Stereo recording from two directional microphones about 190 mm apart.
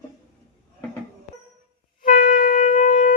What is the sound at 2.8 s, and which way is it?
Shofar, 45° left (ahead or behind).